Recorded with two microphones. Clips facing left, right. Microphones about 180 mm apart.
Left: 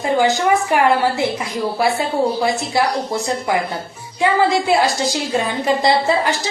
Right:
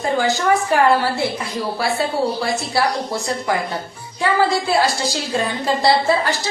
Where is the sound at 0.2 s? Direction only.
15° left (ahead or behind).